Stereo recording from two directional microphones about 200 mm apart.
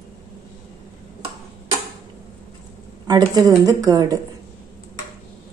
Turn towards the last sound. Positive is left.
turn(degrees=-20)  # may be behind; listen again after turning